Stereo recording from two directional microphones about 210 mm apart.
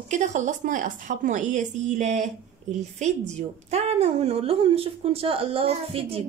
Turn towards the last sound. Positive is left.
turn(degrees=-25)  # may be behind; listen again after turning